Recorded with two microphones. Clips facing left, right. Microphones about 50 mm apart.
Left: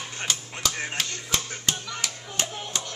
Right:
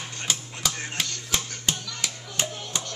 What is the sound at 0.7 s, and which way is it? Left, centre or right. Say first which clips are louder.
Speech: left 3 dB; centre.